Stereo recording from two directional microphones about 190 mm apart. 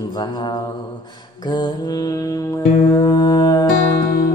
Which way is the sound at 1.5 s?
20° left (ahead or behind).